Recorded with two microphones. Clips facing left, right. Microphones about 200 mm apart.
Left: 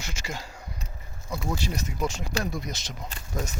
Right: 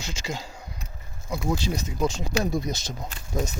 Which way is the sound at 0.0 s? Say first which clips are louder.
Right 3 dB; 20° right (ahead or behind).